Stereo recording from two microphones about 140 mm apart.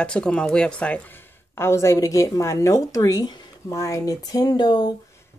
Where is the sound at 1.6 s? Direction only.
20° left (ahead or behind).